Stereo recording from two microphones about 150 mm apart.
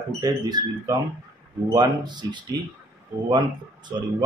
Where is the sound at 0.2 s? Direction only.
25° right (ahead or behind).